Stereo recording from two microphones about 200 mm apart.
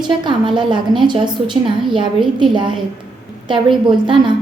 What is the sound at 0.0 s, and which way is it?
A woman's voice, 25° right (ahead or behind).